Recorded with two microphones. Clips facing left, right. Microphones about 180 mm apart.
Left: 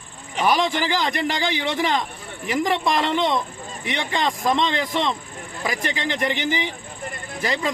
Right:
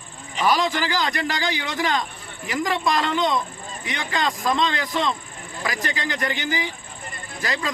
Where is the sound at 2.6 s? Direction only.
25° left (ahead or behind).